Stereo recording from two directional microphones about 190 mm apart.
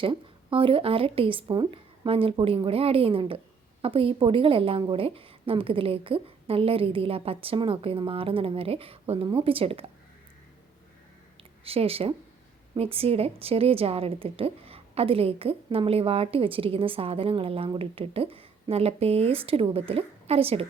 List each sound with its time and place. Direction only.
0.0 s a woman's voice: 25° right (ahead or behind)
11.6 s a woman's voice: 30° right (ahead or behind)